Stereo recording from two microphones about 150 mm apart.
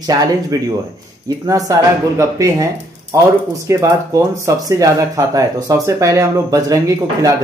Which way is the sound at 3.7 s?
20° right (ahead or behind).